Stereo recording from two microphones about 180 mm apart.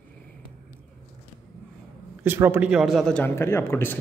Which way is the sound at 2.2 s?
10° right (ahead or behind).